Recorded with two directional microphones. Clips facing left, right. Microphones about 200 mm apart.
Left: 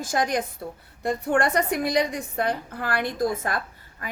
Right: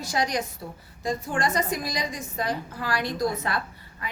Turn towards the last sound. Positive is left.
turn(degrees=50)  # may be behind; listen again after turning